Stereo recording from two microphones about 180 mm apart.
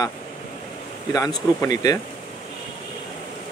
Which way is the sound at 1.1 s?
20° left (ahead or behind).